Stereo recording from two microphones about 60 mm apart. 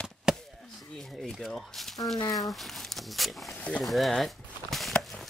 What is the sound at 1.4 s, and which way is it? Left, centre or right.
Speech, centre.